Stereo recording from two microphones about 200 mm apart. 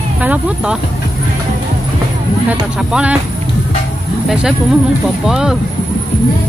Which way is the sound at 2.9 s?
5° right (ahead or behind).